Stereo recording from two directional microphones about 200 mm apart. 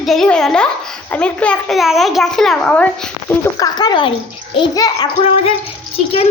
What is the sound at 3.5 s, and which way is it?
A child's voice, 20° left (ahead or behind).